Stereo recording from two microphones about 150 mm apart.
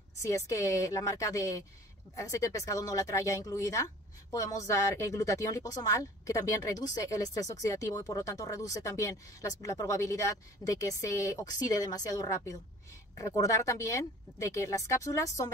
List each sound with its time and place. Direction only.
0.5 s speech: 20° left (ahead or behind)